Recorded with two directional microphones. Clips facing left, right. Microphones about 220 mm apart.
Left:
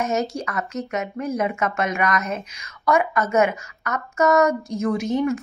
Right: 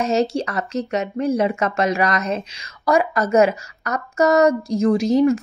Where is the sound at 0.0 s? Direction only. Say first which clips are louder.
Right 5 dB; 30° right (ahead or behind).